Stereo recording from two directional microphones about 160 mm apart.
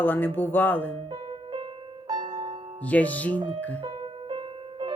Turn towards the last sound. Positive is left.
turn(degrees=-35)  # may be behind; listen again after turning